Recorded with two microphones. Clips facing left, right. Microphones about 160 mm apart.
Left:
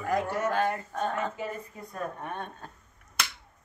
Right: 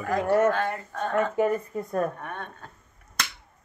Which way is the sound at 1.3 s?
55° right (ahead or behind).